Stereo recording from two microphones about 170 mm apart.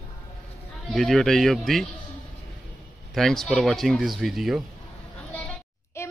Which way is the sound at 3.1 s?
5° left (ahead or behind).